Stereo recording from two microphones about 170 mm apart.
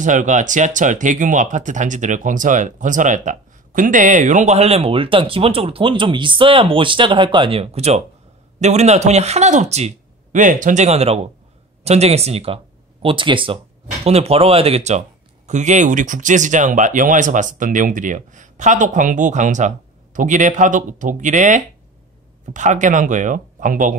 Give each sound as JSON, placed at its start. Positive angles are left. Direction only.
{"t": 0.0, "sound": "a man's voice", "side_deg": -45}